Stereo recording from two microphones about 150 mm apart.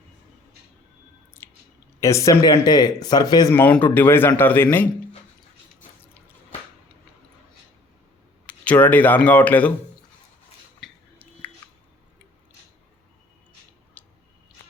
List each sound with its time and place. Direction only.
2.0 s speech: 20° left (ahead or behind)
3.5 s a man's voice: 15° left (ahead or behind)
8.4 s a man's voice: 10° left (ahead or behind)
10.8 s chewing: 10° left (ahead or behind)
14.0 s a sound: 10° left (ahead or behind)